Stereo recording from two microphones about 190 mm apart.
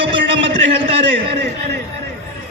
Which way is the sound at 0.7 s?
30° right (ahead or behind).